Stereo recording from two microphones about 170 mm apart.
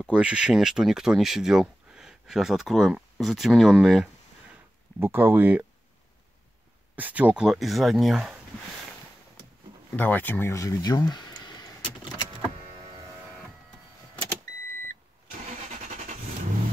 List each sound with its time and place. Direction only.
0.0 s speech: 5° right (ahead or behind)
7.0 s speech: 10° right (ahead or behind)
9.9 s speech: 10° left (ahead or behind)
12.4 s vehicle: 30° right (ahead or behind)